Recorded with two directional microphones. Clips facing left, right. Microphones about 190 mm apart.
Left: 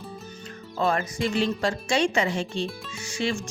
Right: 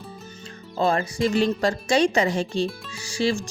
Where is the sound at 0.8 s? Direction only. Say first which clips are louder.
Right 3 dB; 30° right (ahead or behind).